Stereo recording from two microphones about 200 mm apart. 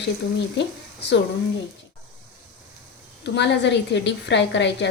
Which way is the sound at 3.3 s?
60° left (ahead or behind).